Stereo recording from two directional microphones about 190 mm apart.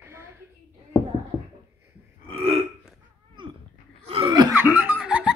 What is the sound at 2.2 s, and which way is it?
Burping, 30° right (ahead or behind).